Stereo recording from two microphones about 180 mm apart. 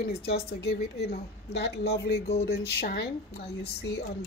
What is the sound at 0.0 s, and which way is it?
A woman's voice, 60° left (ahead or behind).